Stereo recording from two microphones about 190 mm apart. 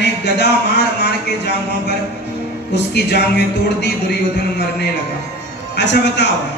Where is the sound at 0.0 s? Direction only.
65° left (ahead or behind).